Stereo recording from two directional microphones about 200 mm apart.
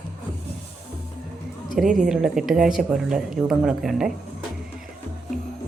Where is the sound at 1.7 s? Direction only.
Centre (ahead or behind).